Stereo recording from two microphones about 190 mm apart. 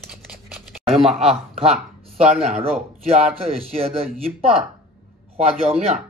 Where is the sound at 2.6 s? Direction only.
30° right (ahead or behind).